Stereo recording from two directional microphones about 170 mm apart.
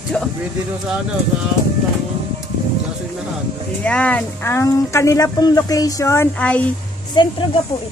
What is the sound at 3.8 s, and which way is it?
Speech, 10° left (ahead or behind).